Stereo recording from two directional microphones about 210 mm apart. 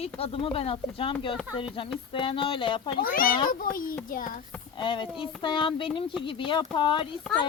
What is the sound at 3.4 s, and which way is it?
Speech, 40° left (ahead or behind).